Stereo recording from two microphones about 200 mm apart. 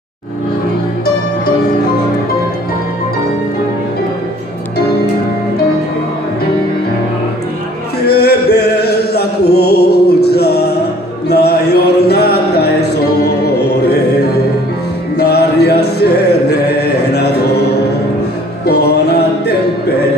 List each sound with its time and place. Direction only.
8.0 s music: 55° left (ahead or behind)
13.6 s mantra: 55° left (ahead or behind)
15.1 s music: 55° left (ahead or behind)
18.7 s music: 55° left (ahead or behind)